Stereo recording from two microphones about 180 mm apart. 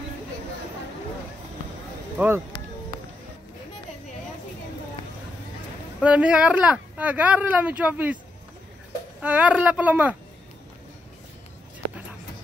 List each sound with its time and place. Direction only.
2.1 s speech: 10° right (ahead or behind)
5.9 s speech: 5° right (ahead or behind)
9.2 s speech: 5° right (ahead or behind)